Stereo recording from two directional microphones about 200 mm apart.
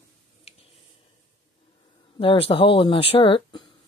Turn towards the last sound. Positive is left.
turn(degrees=25)  # may be behind; listen again after turning